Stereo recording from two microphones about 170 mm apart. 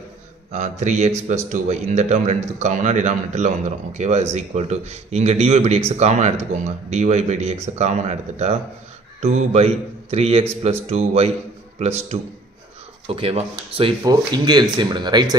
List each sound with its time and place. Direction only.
0.5 s speech: 45° right (ahead or behind); by 15.2 s 25° right (ahead or behind)